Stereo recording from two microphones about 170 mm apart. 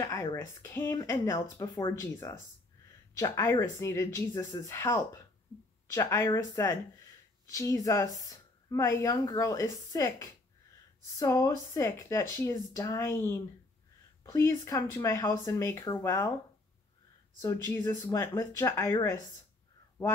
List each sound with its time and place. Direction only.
0.0 s speech: 20° left (ahead or behind)
17.4 s speech: 20° left (ahead or behind)